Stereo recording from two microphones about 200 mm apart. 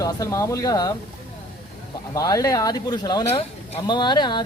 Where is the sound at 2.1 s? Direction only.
15° left (ahead or behind).